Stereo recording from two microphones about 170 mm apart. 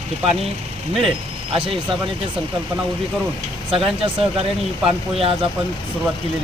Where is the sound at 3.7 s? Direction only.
35° right (ahead or behind).